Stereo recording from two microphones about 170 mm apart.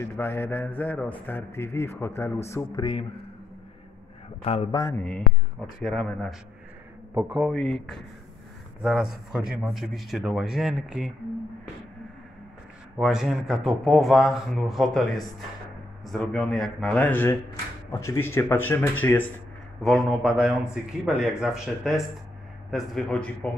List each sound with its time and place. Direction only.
0.0 s speech: 15° left (ahead or behind)
4.5 s a man's voice: 35° left (ahead or behind)
4.7 s speech: 15° left (ahead or behind)
5.9 s speech: centre (ahead or behind)
12.9 s speech: 5° right (ahead or behind)